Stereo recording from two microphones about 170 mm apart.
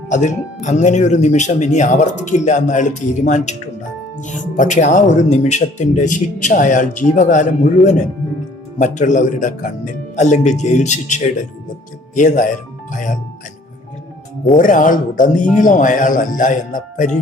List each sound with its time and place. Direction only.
0.1 s speech: 45° left (ahead or behind)
14.4 s speech: 50° left (ahead or behind)